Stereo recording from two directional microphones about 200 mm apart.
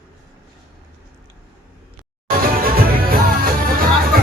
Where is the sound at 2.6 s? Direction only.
50° right (ahead or behind).